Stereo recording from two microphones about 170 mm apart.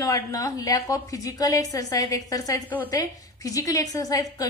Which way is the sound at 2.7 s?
10° left (ahead or behind).